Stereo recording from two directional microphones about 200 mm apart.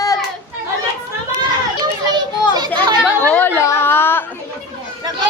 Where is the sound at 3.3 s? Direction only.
10° left (ahead or behind).